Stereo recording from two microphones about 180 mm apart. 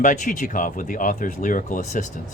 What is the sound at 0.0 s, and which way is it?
Speech, 45° left (ahead or behind).